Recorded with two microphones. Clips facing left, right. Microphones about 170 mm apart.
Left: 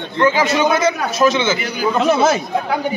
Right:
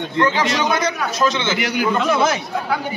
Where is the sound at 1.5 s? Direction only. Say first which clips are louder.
Right 3 dB; 75° right (ahead or behind).